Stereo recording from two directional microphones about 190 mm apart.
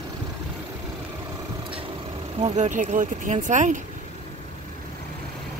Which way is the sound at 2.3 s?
35° right (ahead or behind).